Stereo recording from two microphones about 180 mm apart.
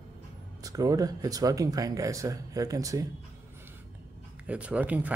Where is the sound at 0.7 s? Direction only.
20° right (ahead or behind).